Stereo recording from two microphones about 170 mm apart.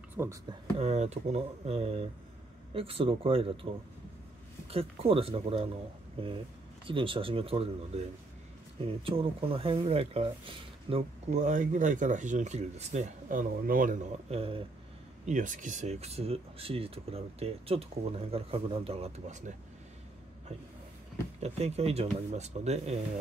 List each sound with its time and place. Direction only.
0.2 s speech: 20° right (ahead or behind)
0.7 s speech: 40° right (ahead or behind)
4.6 s speech: 35° right (ahead or behind)
6.9 s speech: 30° right (ahead or behind); by 13.9 s 55° right (ahead or behind)
14.3 s speech: 35° right (ahead or behind)
15.2 s speech: 50° right (ahead or behind)
21.4 s speech: 40° right (ahead or behind)